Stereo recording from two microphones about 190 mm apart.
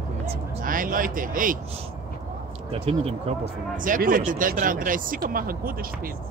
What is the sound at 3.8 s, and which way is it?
Speech, 45° right (ahead or behind).